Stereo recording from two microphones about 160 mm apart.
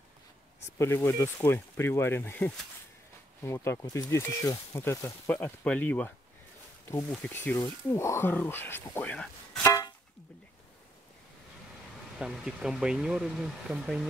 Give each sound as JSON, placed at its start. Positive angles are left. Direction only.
{"t": 0.7, "sound": "speech", "side_deg": 15}
{"t": 9.7, "sound": "vehicle horn", "side_deg": 20}
{"t": 12.2, "sound": "speech", "side_deg": -5}